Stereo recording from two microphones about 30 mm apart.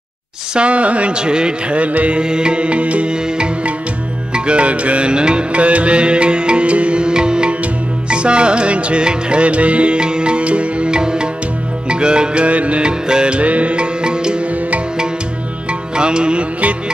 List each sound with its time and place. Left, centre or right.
0.6 s speech: right
1.1 s music: right
1.8 s speech: right
2.1 s music: right
4.3 s music: right
5.5 s music: right
7.0 s music: right
10.9 s music: right
12.4 s speech: right
13.1 s music: right
13.4 s speech: right
16.0 s music: right